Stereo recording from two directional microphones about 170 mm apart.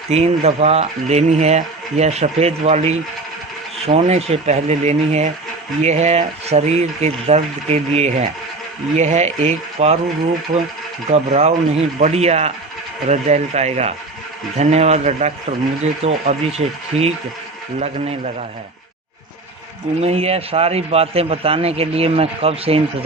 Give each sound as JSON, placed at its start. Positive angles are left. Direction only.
{"t": 0.1, "sound": "a man's voice", "side_deg": -40}
{"t": 10.5, "sound": "speech", "side_deg": -50}
{"t": 11.1, "sound": "a man's voice", "side_deg": -40}
{"t": 20.0, "sound": "a man's voice", "side_deg": -35}